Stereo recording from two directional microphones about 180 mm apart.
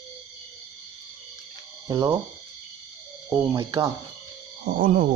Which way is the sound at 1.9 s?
15° right (ahead or behind).